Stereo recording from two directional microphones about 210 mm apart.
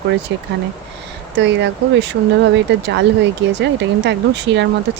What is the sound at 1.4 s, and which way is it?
Speech, 55° right (ahead or behind).